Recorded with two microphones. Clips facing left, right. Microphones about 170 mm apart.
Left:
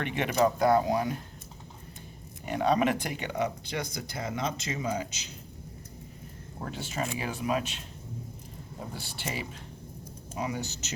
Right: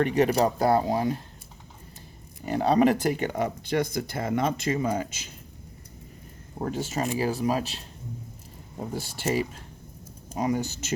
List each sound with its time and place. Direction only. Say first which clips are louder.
0.0 s speech: right 5 dB; 40° right (ahead or behind)
2.5 s speech: right 5 dB; 35° right (ahead or behind); by 5.3 s 50° right (ahead or behind)
6.6 s speech: right 6 dB; 45° right (ahead or behind)
8.9 s speech: right 11 dB; 45° right (ahead or behind)